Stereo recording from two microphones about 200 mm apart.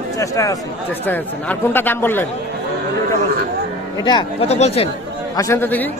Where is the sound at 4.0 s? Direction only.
25° left (ahead or behind).